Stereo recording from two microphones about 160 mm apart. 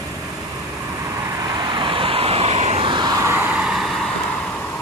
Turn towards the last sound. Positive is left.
turn(degrees=-5)  # may be behind; listen again after turning